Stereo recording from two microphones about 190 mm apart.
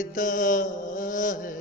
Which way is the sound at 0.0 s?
45° left (ahead or behind).